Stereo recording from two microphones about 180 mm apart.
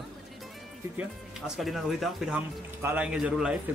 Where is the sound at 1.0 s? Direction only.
Centre (ahead or behind).